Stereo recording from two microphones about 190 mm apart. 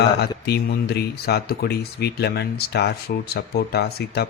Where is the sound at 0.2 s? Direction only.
60° left (ahead or behind).